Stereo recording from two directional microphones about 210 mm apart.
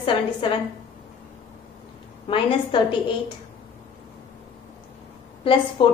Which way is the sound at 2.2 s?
25° left (ahead or behind).